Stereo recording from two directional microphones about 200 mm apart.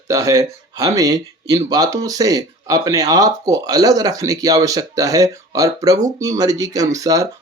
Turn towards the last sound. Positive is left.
turn(degrees=-15)  # may be behind; listen again after turning